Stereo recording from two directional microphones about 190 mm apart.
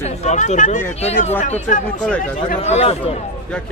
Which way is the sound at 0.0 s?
35° left (ahead or behind).